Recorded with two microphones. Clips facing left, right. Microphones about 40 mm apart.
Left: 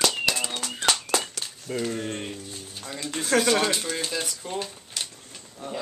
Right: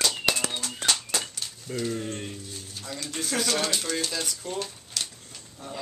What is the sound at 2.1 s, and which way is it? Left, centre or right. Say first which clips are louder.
Speech: left 3 dB; left.